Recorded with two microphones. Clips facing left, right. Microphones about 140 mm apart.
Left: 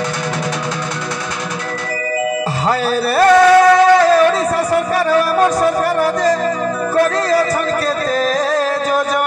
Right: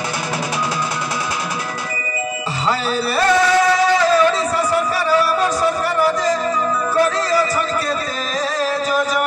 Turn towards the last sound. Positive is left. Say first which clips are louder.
# left 3 dB
turn(degrees=55)  # may be behind; listen again after turning